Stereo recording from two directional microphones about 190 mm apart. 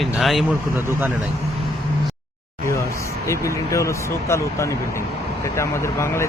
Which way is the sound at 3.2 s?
15° left (ahead or behind).